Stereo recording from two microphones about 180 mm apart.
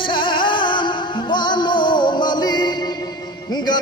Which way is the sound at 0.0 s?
25° left (ahead or behind).